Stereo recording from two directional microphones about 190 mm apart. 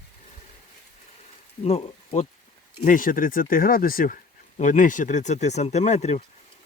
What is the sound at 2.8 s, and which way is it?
Speech, 45° left (ahead or behind).